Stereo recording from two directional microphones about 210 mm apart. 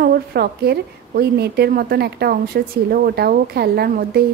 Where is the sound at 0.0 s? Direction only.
45° right (ahead or behind).